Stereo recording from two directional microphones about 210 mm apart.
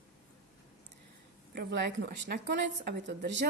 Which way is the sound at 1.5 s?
55° right (ahead or behind).